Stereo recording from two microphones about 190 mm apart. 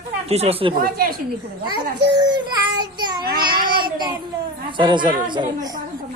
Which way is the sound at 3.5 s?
50° right (ahead or behind).